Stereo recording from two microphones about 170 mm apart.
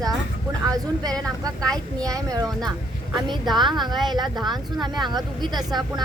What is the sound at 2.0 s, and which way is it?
A woman's voice, 20° right (ahead or behind).